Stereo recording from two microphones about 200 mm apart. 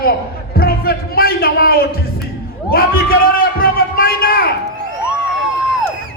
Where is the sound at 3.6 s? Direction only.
45° left (ahead or behind).